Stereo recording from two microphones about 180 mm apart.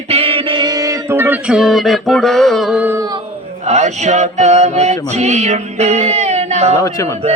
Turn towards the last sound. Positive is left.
turn(degrees=20)  # may be behind; listen again after turning